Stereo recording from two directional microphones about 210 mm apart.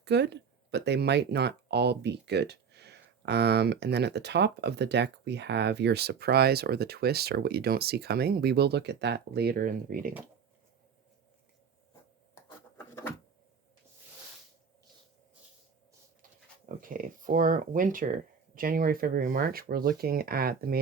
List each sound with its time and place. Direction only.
0.0 s speech: 55° right (ahead or behind)
12.3 s a sound: 15° left (ahead or behind)
16.6 s speech: 40° right (ahead or behind)